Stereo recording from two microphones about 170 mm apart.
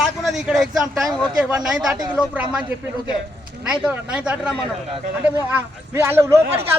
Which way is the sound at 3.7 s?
5° right (ahead or behind).